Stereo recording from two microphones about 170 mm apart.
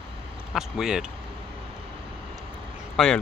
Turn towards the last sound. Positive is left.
turn(degrees=5)  # may be behind; listen again after turning